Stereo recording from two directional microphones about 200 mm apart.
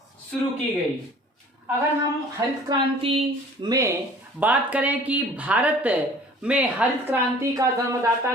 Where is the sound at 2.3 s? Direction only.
25° right (ahead or behind).